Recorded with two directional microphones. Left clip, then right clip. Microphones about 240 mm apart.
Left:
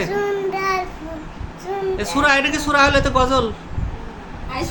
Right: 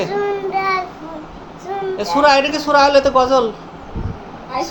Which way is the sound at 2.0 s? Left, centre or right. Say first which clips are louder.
Right 5 dB; centre.